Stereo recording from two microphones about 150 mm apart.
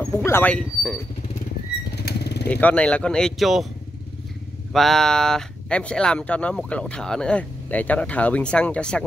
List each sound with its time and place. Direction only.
0.0 s speech: 20° left (ahead or behind)
2.0 s vehicle: 90° left
2.5 s speech: 10° left (ahead or behind)
4.7 s speech: centre (ahead or behind)